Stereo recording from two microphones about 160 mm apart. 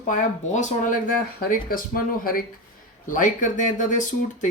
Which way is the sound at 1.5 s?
60° left (ahead or behind).